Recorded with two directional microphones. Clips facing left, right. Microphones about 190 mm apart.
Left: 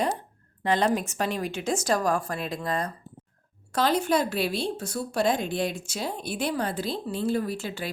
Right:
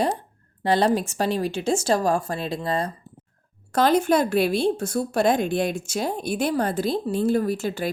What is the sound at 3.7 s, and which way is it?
Speech, 50° right (ahead or behind).